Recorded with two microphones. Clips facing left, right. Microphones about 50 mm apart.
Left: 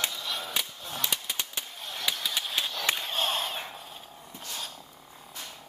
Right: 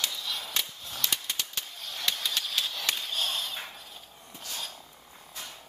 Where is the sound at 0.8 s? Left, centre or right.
Left.